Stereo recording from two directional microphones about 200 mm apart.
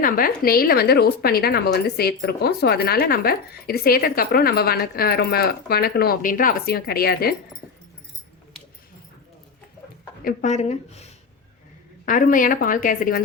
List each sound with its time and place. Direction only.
0.0 s a woman's voice: 45° left (ahead or behind)
10.2 s speech: 35° left (ahead or behind)
12.0 s a woman's voice: 40° left (ahead or behind)